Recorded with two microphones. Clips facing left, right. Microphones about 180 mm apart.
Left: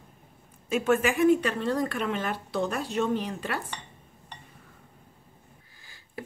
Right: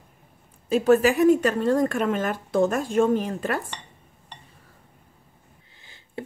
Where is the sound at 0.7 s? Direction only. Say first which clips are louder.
Right 6 dB; 35° right (ahead or behind).